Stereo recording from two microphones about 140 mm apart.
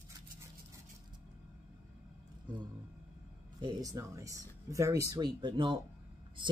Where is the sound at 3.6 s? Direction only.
25° right (ahead or behind).